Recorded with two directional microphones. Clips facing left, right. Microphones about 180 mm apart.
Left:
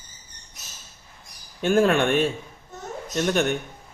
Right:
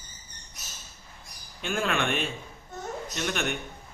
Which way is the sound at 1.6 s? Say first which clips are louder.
Left 9 dB; 45° left (ahead or behind).